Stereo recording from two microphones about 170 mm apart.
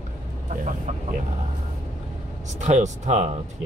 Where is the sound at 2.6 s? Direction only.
45° right (ahead or behind).